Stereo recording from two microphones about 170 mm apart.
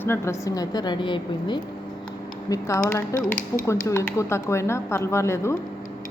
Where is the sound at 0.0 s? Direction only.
15° left (ahead or behind).